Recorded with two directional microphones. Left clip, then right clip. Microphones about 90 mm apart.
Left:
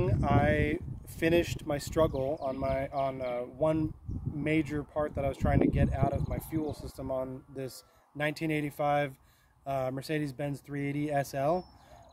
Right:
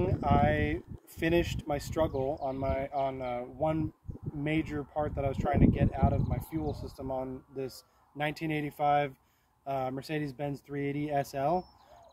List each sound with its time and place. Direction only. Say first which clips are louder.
0.0 s speech: right 1 dB; 45° left (ahead or behind)
7.1 s speech: left 2 dB; 50° left (ahead or behind)